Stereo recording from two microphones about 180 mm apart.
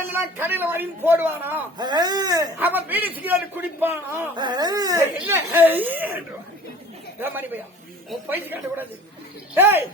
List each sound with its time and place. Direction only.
0.1 s a man's voice: 10° right (ahead or behind)
1.8 s speech: 25° right (ahead or behind)
2.6 s a man's voice: 10° right (ahead or behind)
4.4 s a man's voice: 25° right (ahead or behind)